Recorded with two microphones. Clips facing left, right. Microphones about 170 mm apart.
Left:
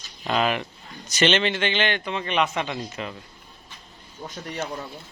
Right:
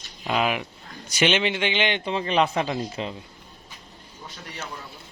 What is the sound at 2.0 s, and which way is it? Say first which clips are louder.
Speech: right 2 dB; 30° right (ahead or behind).